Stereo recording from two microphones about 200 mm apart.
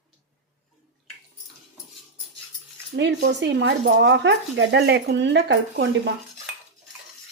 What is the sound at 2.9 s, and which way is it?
Speech, 60° right (ahead or behind).